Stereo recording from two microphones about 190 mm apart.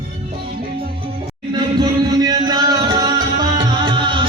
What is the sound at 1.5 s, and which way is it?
Music, 20° right (ahead or behind).